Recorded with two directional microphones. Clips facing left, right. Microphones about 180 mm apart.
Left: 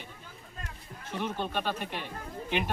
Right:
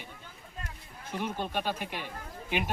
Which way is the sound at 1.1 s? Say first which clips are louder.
Even; 10° right (ahead or behind).